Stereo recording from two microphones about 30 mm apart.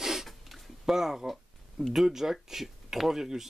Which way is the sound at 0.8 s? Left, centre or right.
Centre.